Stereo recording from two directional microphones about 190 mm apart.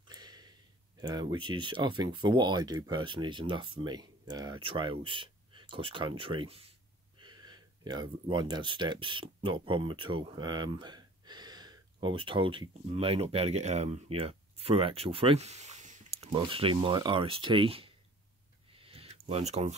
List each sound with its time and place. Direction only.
0.1 s speech: 20° right (ahead or behind); by 16.3 s 35° right (ahead or behind)
16.3 s speech: 25° right (ahead or behind)
18.7 s a sound: 30° right (ahead or behind)